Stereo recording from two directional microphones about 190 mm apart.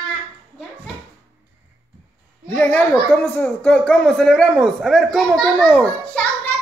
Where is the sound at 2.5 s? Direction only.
10° left (ahead or behind).